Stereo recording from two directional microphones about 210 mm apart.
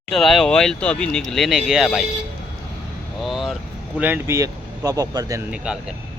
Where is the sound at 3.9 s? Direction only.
10° right (ahead or behind).